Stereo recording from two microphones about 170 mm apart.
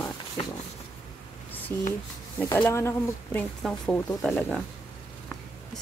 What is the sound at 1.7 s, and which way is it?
Speech, 10° left (ahead or behind).